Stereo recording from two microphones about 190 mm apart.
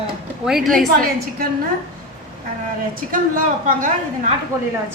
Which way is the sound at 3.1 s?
45° right (ahead or behind).